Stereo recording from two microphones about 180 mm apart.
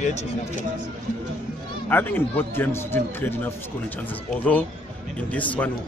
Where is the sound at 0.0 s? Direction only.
40° left (ahead or behind).